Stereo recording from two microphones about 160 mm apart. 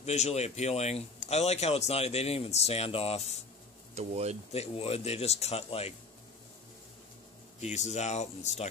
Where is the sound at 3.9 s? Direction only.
40° right (ahead or behind).